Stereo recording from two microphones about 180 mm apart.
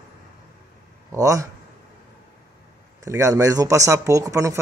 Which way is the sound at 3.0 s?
15° right (ahead or behind).